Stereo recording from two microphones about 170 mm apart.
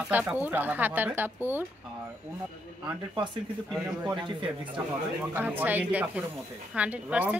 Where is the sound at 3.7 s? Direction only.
5° right (ahead or behind).